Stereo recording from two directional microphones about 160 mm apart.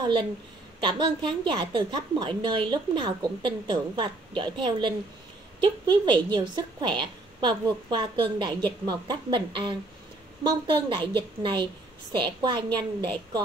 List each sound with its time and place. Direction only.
0.7 s speech: 30° right (ahead or behind)